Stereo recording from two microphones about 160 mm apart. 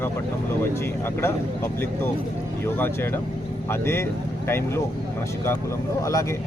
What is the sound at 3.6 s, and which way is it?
Speech, 15° left (ahead or behind).